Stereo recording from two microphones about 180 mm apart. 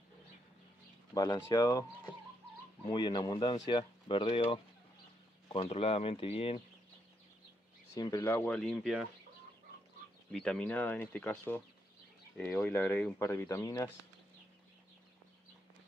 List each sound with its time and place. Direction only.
1.1 s speech: 20° left (ahead or behind)
5.6 s speech: 35° left (ahead or behind)
7.9 s speech: 20° left (ahead or behind); by 9.0 s centre (ahead or behind)
10.3 s speech: 5° left (ahead or behind)